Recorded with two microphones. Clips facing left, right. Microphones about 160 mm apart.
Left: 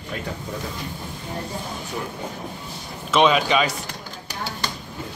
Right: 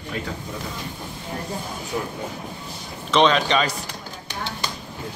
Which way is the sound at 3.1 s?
5° left (ahead or behind).